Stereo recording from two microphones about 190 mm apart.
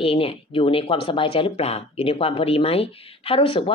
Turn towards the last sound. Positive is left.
turn(degrees=30)  # may be behind; listen again after turning